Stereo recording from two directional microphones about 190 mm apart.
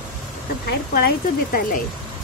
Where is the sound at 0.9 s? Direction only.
50° left (ahead or behind).